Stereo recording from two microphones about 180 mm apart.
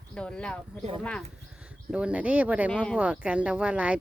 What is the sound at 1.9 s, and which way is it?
Speech, 5° right (ahead or behind).